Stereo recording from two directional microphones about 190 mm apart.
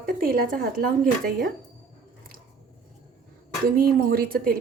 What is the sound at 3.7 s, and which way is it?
Speech, 50° right (ahead or behind).